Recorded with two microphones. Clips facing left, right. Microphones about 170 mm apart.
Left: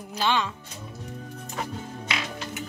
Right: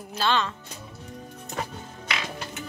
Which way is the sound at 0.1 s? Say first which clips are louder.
Even; 15° left (ahead or behind).